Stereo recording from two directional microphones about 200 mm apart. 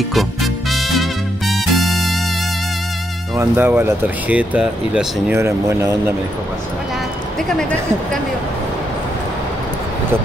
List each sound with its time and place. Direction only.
0.1 s music: centre (ahead or behind)
3.3 s speech: 10° right (ahead or behind)